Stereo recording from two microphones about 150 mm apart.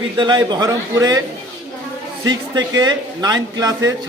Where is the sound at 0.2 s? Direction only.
30° right (ahead or behind).